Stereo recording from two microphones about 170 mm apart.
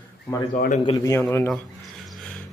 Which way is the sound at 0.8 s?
20° left (ahead or behind).